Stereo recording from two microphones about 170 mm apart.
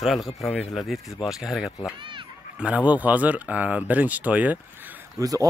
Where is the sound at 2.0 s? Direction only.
30° right (ahead or behind).